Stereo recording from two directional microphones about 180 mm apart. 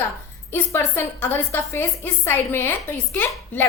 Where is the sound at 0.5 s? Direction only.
10° left (ahead or behind).